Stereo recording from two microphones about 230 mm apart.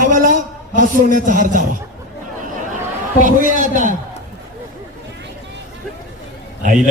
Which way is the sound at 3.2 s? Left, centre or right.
Right.